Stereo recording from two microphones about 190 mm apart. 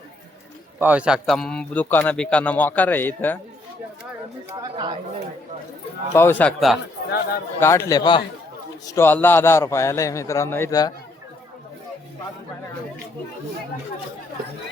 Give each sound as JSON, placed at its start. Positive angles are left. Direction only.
{"t": 0.8, "sound": "a man's voice", "side_deg": -10}
{"t": 4.6, "sound": "speech", "side_deg": -25}
{"t": 6.1, "sound": "a man's voice", "side_deg": 10}
{"t": 7.1, "sound": "a man's voice", "side_deg": 55}
{"t": 7.6, "sound": "a man's voice", "side_deg": 15}
{"t": 8.9, "sound": "a man's voice", "side_deg": 10}